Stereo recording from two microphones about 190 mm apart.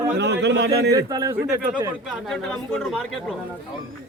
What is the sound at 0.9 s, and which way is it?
Speech, 20° right (ahead or behind).